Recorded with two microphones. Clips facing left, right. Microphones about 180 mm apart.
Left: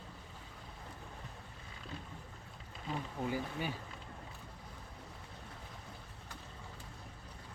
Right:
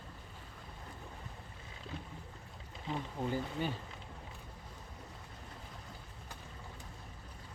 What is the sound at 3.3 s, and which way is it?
Speech, 10° left (ahead or behind).